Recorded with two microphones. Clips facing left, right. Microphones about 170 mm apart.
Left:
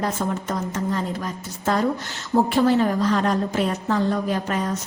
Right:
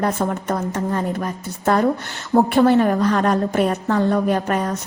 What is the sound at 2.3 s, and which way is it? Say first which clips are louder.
A woman's voice: right 4 dB; 55° right (ahead or behind).